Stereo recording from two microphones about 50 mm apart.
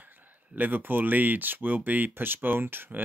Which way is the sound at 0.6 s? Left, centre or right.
Right.